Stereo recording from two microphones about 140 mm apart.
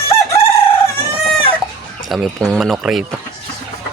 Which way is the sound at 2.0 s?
Centre (ahead or behind).